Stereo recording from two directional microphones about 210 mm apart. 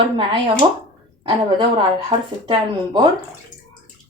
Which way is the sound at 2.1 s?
20° right (ahead or behind).